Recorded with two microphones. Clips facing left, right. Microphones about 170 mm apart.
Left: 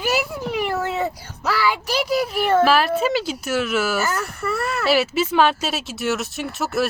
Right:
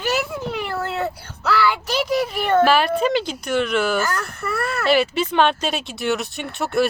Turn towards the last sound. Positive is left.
turn(degrees=0)  # may be behind; listen again after turning